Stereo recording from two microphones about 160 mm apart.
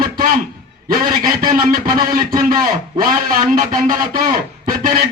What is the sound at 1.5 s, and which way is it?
A man's voice, 65° right (ahead or behind).